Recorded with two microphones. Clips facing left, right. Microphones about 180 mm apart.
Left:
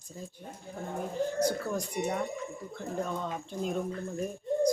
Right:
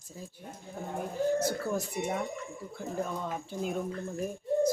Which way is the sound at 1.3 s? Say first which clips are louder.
Even; 5° right (ahead or behind).